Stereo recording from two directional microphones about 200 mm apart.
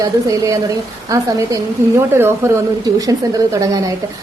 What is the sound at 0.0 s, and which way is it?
A woman's voice, 15° right (ahead or behind).